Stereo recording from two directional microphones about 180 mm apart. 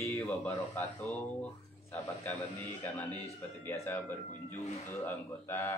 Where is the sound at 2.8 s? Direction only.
10° left (ahead or behind).